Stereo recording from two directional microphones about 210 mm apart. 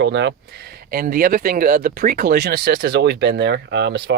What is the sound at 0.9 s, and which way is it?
Speech, 45° right (ahead or behind).